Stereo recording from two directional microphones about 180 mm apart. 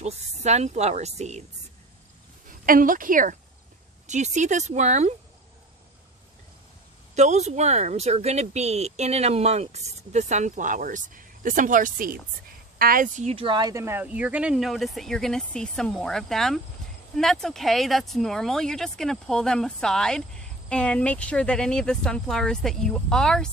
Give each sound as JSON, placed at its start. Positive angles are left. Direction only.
{"t": 0.0, "sound": "speech", "side_deg": -40}
{"t": 2.4, "sound": "a woman's voice", "side_deg": -50}
{"t": 7.2, "sound": "speech", "side_deg": -40}